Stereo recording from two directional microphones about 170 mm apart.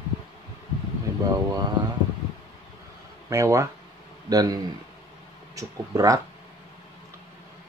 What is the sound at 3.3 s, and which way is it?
Speech, 20° right (ahead or behind).